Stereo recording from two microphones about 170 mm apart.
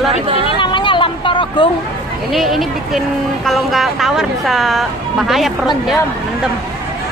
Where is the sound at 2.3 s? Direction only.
Centre (ahead or behind).